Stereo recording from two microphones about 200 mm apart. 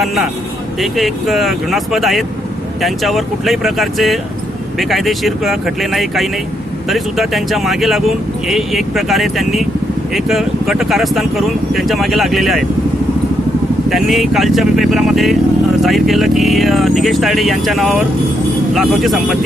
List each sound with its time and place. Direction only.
0.0 s speech: centre (ahead or behind)
13.9 s speech: centre (ahead or behind)